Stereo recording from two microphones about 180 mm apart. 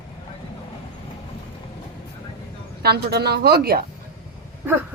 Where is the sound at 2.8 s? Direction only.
60° right (ahead or behind).